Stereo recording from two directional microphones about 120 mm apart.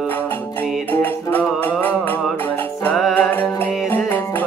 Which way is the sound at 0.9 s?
15° left (ahead or behind).